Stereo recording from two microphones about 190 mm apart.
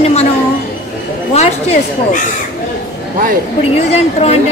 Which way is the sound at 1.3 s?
35° left (ahead or behind).